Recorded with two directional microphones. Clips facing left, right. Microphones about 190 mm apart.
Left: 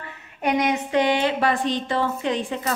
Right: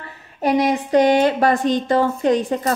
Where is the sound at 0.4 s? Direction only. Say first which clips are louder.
Right 4 dB; 35° right (ahead or behind).